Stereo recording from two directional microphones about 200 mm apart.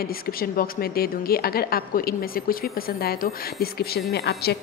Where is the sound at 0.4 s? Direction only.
50° left (ahead or behind).